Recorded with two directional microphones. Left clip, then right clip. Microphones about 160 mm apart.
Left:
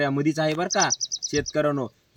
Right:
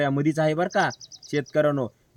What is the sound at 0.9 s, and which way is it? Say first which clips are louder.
Speech: left 4 dB; 90° right.